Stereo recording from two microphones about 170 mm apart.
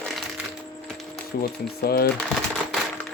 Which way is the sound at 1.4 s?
65° left (ahead or behind).